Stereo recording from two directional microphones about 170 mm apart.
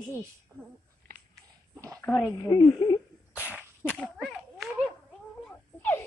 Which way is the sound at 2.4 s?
25° left (ahead or behind).